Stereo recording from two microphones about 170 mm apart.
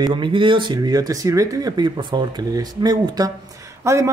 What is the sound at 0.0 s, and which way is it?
Speech, 30° right (ahead or behind).